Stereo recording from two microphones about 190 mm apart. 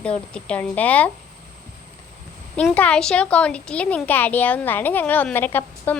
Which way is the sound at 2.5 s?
5° left (ahead or behind).